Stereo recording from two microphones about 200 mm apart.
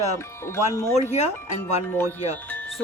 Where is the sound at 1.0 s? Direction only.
35° left (ahead or behind).